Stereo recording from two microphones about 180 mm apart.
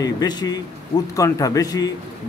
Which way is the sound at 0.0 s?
20° left (ahead or behind).